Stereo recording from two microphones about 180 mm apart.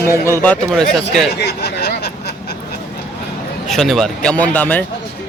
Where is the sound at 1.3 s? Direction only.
65° left (ahead or behind).